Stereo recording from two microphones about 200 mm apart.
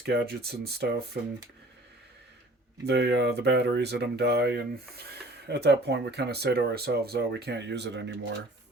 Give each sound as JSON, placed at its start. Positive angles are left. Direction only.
{"t": 0.0, "sound": "speech", "side_deg": -55}
{"t": 2.8, "sound": "speech", "side_deg": -55}